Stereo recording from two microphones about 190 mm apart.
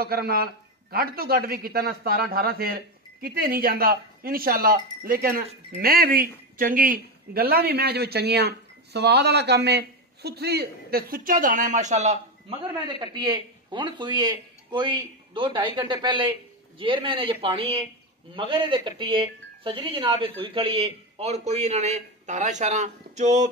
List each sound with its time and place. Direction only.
0.0 s a man's voice: 55° right (ahead or behind); by 23.5 s 40° right (ahead or behind)